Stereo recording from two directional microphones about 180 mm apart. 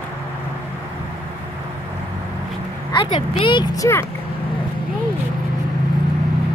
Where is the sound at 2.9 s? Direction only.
25° left (ahead or behind).